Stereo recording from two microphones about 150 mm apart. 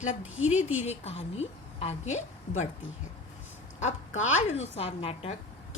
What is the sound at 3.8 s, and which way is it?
A woman's voice, 50° left (ahead or behind).